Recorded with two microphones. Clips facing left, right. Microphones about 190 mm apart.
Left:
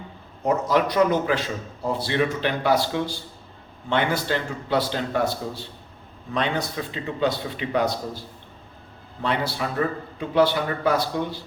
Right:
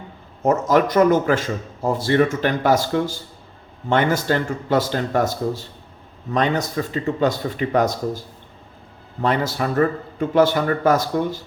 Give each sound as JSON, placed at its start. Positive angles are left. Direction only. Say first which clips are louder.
{"t": 0.4, "sound": "a man's voice", "louder": "right 4 dB", "side_deg": -45}
{"t": 9.2, "sound": "a man's voice", "louder": "right 5 dB", "side_deg": -45}